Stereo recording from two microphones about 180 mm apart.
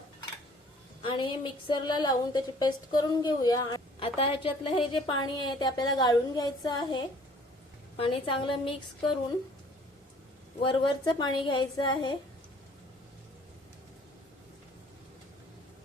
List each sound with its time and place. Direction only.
1.0 s a woman's voice: 30° left (ahead or behind)
10.7 s a woman's voice: 25° left (ahead or behind)